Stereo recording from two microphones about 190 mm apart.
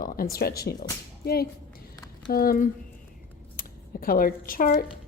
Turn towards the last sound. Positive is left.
turn(degrees=45)  # may be behind; listen again after turning